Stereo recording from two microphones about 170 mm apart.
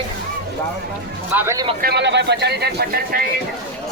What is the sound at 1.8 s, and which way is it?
Speech, 80° right.